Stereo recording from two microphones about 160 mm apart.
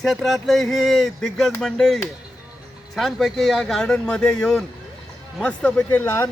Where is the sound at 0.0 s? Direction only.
Centre (ahead or behind).